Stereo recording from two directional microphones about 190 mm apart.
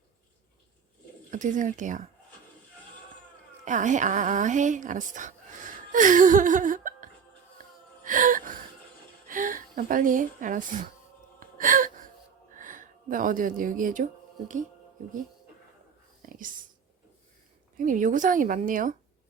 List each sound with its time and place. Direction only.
1.3 s speech: 40° right (ahead or behind)
3.6 s a woman's voice: 40° right (ahead or behind)
8.0 s gasp: 45° right (ahead or behind)
9.2 s speech: 45° right (ahead or behind)
11.3 s gasp: 45° right (ahead or behind)
12.5 s speech: 45° right (ahead or behind)
16.2 s whispering: 45° right (ahead or behind)
17.7 s speech: 45° right (ahead or behind)